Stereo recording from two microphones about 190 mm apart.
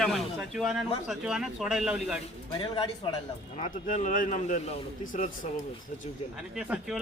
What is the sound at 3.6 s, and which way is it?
A man's voice, 40° left (ahead or behind).